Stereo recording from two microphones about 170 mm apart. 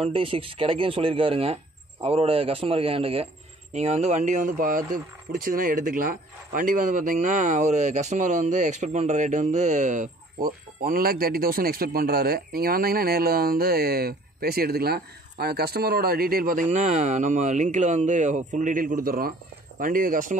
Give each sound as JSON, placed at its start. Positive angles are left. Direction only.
{"t": 0.0, "sound": "speech", "side_deg": -35}